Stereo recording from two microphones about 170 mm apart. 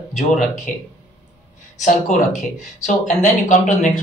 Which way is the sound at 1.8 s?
45° left (ahead or behind).